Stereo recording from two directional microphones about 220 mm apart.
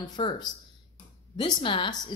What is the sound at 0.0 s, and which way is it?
Speech, 20° left (ahead or behind).